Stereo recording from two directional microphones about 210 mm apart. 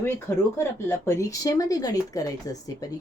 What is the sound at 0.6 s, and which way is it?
A woman's voice, 10° left (ahead or behind).